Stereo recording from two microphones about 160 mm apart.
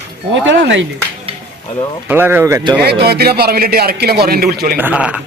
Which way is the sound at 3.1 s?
80° right.